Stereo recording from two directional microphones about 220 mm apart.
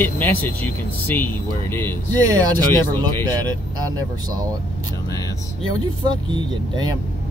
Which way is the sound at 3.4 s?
15° right (ahead or behind).